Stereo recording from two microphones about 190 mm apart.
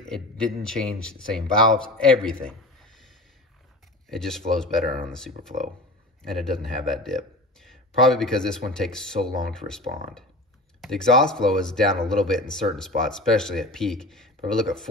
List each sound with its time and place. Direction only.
0.7 s speech: 5° left (ahead or behind)
4.1 s speech: centre (ahead or behind)
4.8 s speech: 50° right (ahead or behind)
6.2 s speech: centre (ahead or behind)